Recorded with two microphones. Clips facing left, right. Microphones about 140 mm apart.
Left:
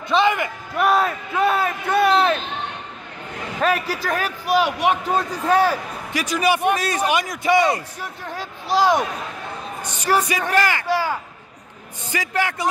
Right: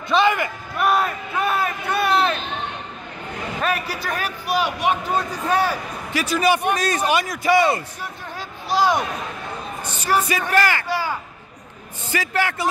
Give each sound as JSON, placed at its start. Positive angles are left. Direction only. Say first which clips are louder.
{"t": 0.1, "sound": "a sound", "louder": "even", "side_deg": 20}
{"t": 0.7, "sound": "crowd", "louder": "left 2 dB", "side_deg": 90}
{"t": 3.6, "sound": "a man's voice", "louder": "left 4 dB", "side_deg": 90}
{"t": 6.1, "sound": "a man's voice", "louder": "right 1 dB", "side_deg": 15}
{"t": 8.0, "sound": "a sound", "louder": "left 2 dB", "side_deg": 90}
{"t": 10.1, "sound": "a man's voice", "louder": "left 1 dB", "side_deg": 75}
{"t": 10.5, "sound": "a man's voice", "louder": "even", "side_deg": 20}
{"t": 10.9, "sound": "a man's voice", "louder": "left 3 dB", "side_deg": 90}
{"t": 12.1, "sound": "a man's voice", "louder": "right 1 dB", "side_deg": 15}